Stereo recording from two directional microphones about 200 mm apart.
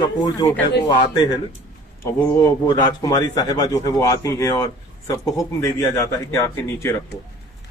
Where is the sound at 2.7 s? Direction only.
20° left (ahead or behind).